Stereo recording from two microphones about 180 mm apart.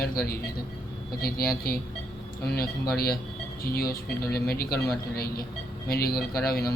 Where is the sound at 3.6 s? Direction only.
55° left (ahead or behind).